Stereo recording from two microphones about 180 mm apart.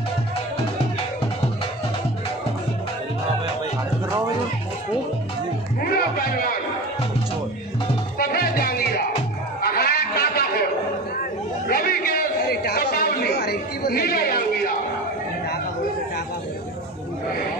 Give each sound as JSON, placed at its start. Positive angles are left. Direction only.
{"t": 5.9, "sound": "music", "side_deg": 55}
{"t": 8.2, "sound": "music", "side_deg": 55}
{"t": 9.6, "sound": "a sound", "side_deg": 60}
{"t": 11.6, "sound": "chatter", "side_deg": 55}